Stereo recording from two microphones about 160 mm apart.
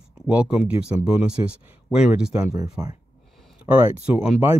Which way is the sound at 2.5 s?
25° right (ahead or behind).